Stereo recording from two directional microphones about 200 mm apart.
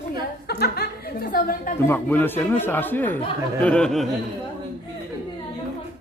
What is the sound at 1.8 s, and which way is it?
Speech, 10° left (ahead or behind).